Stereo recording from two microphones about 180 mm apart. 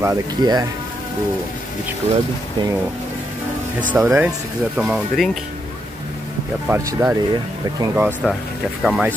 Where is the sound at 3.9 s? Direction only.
5° right (ahead or behind).